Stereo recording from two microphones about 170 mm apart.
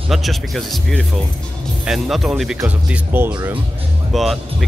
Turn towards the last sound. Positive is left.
turn(degrees=0)  # may be behind; listen again after turning